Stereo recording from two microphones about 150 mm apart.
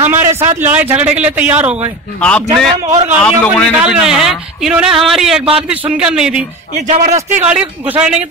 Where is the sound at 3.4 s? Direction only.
10° left (ahead or behind).